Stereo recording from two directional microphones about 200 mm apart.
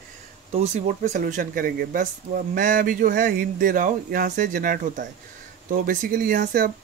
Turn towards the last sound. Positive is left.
turn(degrees=-45)  # may be behind; listen again after turning